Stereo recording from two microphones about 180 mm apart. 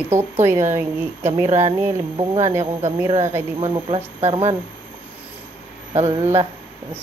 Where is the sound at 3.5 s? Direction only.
30° right (ahead or behind).